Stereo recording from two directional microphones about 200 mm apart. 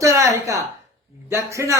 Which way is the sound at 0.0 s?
15° right (ahead or behind).